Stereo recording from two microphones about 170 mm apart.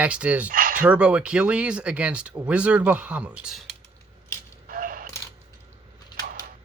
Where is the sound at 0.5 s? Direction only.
55° right (ahead or behind).